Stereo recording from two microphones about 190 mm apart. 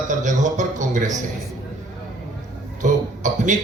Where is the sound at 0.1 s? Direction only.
40° right (ahead or behind).